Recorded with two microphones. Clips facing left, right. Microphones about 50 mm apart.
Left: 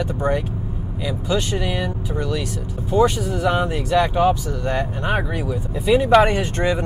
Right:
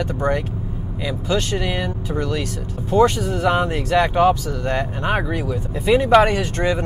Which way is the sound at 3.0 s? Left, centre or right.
Centre.